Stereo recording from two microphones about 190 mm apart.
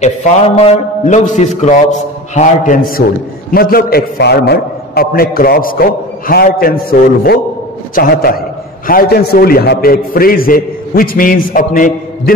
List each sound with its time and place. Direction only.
0.0 s a man's voice: 35° left (ahead or behind)